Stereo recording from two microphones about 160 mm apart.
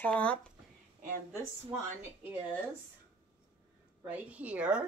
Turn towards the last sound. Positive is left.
turn(degrees=-5)  # may be behind; listen again after turning